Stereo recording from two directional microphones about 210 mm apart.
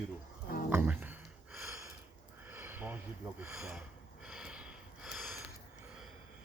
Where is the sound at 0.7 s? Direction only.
10° right (ahead or behind).